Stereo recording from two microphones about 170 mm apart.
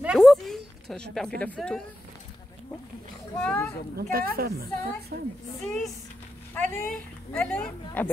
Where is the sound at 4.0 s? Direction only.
60° right (ahead or behind).